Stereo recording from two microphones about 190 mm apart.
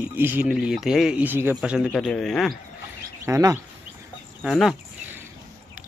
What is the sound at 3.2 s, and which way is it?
Speech, 15° right (ahead or behind).